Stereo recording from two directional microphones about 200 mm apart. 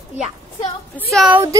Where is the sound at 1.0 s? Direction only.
Centre (ahead or behind).